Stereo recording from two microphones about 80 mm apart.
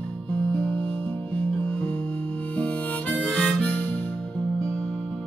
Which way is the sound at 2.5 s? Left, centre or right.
Centre.